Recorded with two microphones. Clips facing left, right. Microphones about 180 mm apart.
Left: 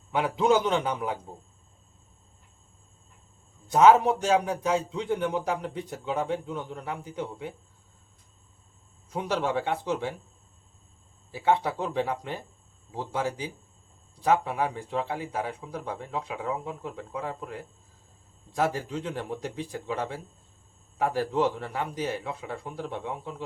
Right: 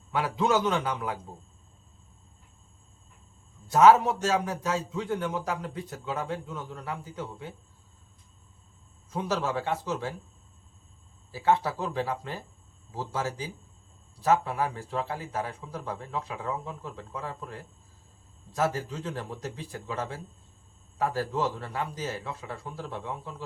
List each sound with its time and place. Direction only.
0.1 s a man's voice: 20° left (ahead or behind)
3.7 s speech: 20° left (ahead or behind)
9.1 s speech: 15° left (ahead or behind)
11.3 s speech: 15° left (ahead or behind)
18.5 s speech: 15° left (ahead or behind)